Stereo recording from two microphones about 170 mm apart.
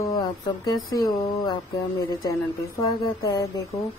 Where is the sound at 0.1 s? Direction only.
20° left (ahead or behind).